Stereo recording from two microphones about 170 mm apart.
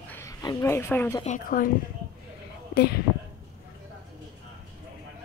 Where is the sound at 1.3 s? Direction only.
55° left (ahead or behind).